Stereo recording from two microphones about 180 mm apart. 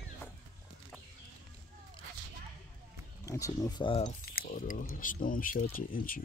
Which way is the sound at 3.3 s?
15° left (ahead or behind).